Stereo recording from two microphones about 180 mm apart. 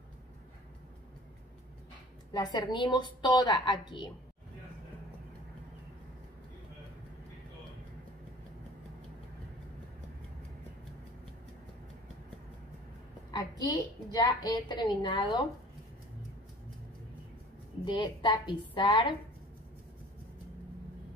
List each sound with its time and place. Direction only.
2.3 s a woman's voice: 20° left (ahead or behind)
13.3 s a woman's voice: 20° left (ahead or behind)
17.8 s a woman's voice: 25° left (ahead or behind)